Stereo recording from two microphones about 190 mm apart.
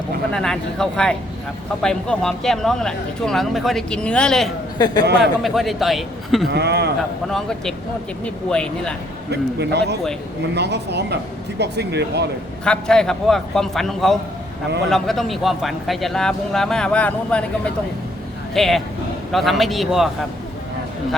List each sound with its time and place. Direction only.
0.3 s speech: 5° left (ahead or behind)
4.8 s a man's voice: 20° left (ahead or behind)
5.2 s speech: centre (ahead or behind)
6.5 s speech: 60° right (ahead or behind)
7.3 s speech: centre (ahead or behind)
9.3 s speech: 60° right (ahead or behind)
12.6 s speech: 5° left (ahead or behind)
18.5 s speech: centre (ahead or behind)